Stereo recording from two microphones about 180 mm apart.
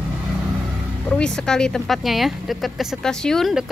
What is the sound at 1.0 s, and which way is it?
Speech, 5° left (ahead or behind).